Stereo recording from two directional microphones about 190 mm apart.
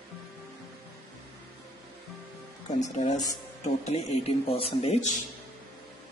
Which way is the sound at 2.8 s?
40° left (ahead or behind).